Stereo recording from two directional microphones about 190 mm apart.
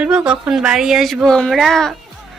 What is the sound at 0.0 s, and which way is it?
A woman's voice, 5° right (ahead or behind).